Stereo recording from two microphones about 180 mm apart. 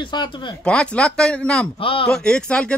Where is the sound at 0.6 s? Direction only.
5° left (ahead or behind).